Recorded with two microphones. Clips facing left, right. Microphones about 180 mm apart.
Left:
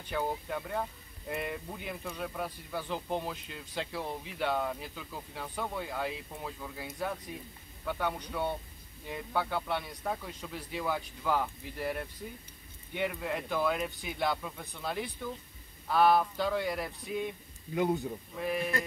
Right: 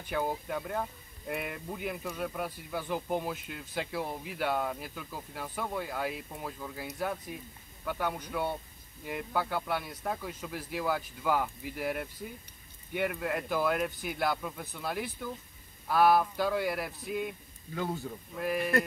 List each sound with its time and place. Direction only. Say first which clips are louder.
0.1 s speech: right 1 dB; 5° right (ahead or behind)
17.7 s speech: left 5 dB; 20° left (ahead or behind)
18.3 s speech: right 2 dB; centre (ahead or behind)